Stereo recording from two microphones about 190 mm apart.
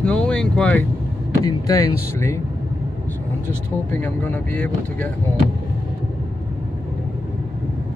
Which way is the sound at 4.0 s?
10° left (ahead or behind).